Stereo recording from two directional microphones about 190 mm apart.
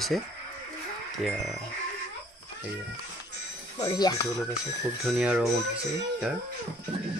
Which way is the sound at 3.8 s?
20° left (ahead or behind).